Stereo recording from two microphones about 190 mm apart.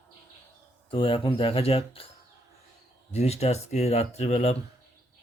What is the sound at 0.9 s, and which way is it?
Speech, 25° left (ahead or behind).